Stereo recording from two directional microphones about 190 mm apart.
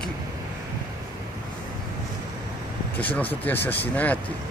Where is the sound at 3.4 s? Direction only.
10° left (ahead or behind).